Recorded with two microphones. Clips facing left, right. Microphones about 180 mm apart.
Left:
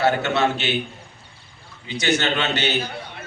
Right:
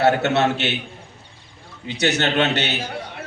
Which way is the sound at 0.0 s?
65° right (ahead or behind).